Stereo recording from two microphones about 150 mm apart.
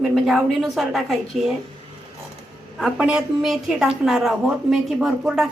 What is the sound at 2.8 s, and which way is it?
Speech, 5° right (ahead or behind).